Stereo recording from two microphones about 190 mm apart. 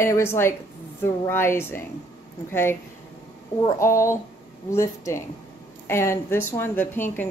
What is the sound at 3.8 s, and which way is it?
A woman's voice, 15° left (ahead or behind).